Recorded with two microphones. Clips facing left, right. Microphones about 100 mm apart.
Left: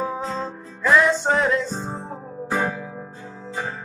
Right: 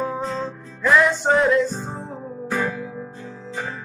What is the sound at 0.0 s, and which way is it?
Music, centre (ahead or behind).